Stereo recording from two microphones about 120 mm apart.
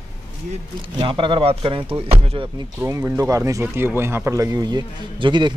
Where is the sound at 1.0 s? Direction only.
45° right (ahead or behind).